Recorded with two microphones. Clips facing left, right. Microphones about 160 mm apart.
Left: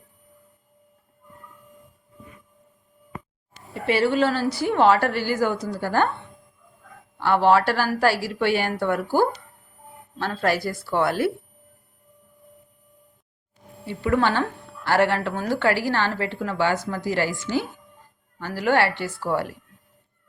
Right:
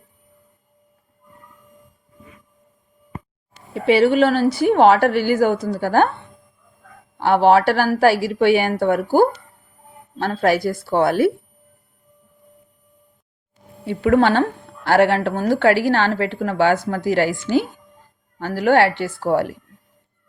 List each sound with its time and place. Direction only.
3.8 s a woman's voice: 65° right (ahead or behind)
7.2 s a woman's voice: 55° right (ahead or behind)
14.0 s a woman's voice: 60° right (ahead or behind)